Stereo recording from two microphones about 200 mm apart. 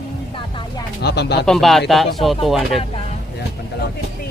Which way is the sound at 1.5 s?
Centre (ahead or behind).